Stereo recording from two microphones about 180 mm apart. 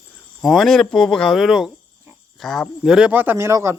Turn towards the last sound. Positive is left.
turn(degrees=-15)  # may be behind; listen again after turning